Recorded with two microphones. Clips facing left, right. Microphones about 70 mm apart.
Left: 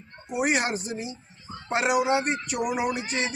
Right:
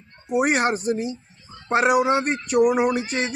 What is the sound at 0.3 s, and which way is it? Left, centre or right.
A man's voice, right.